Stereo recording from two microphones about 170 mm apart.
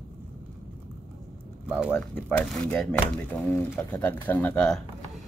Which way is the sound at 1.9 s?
10° left (ahead or behind).